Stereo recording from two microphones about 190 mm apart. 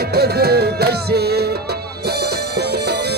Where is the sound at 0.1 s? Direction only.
55° right (ahead or behind).